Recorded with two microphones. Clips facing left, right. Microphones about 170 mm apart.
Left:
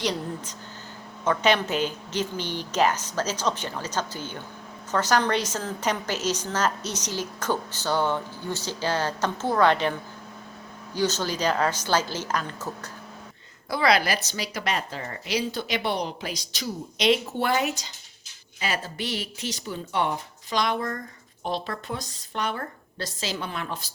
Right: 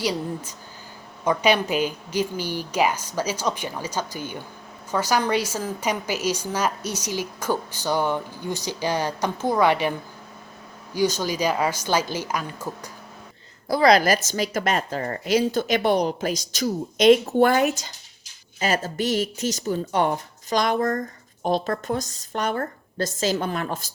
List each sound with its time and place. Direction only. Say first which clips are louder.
0.0 s a woman's voice: right 2 dB; 10° right (ahead or behind)
13.7 s speech: right 5 dB; 40° right (ahead or behind)